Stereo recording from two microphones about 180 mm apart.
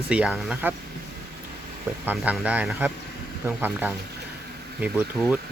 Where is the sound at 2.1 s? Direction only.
5° right (ahead or behind).